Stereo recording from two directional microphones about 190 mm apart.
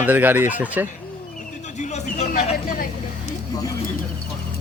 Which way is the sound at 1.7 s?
40° left (ahead or behind).